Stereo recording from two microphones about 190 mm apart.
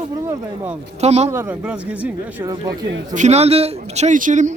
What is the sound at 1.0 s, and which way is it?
Speech, 35° right (ahead or behind).